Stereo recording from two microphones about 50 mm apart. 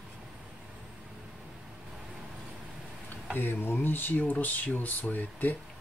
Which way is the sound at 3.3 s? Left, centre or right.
Left.